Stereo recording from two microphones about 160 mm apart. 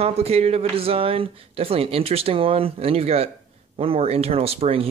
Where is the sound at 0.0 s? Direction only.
40° right (ahead or behind).